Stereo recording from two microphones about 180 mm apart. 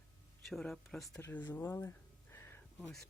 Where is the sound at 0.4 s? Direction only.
Centre (ahead or behind).